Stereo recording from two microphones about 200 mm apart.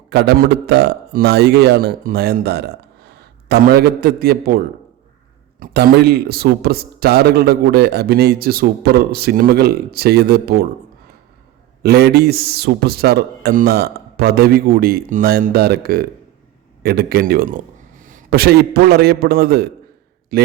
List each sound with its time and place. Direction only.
0.1 s a man's voice: 60° right (ahead or behind)
11.8 s a man's voice: 55° right (ahead or behind)